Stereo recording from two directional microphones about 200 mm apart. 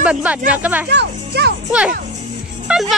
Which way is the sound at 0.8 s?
55° right (ahead or behind).